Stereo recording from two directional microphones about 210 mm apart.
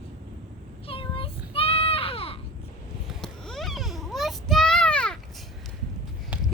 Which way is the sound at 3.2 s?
Centre (ahead or behind).